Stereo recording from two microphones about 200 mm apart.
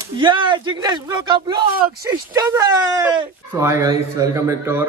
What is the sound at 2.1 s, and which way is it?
Speech, 15° right (ahead or behind).